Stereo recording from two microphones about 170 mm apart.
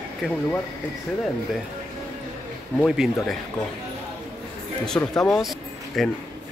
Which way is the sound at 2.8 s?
5° right (ahead or behind).